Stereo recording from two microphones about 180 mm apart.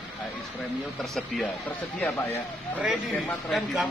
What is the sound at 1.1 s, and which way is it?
Speech, centre (ahead or behind).